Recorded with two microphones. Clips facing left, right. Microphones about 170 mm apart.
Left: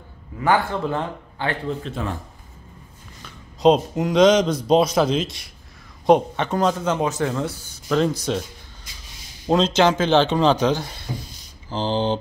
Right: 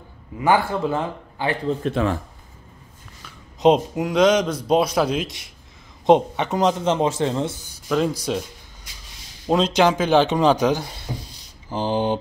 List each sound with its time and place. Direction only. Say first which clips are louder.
0.4 s speech: right 1 dB; 10° right (ahead or behind)
2.0 s speech: right 7 dB; 90° right
3.9 s a man's voice: left 2 dB; 5° right (ahead or behind); by 7.5 s 25° right (ahead or behind)
7.9 s speech: left 1 dB; 10° right (ahead or behind)
9.5 s speech: even; 10° right (ahead or behind)